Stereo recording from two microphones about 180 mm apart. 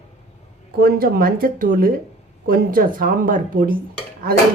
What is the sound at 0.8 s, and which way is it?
Speech, 55° right (ahead or behind).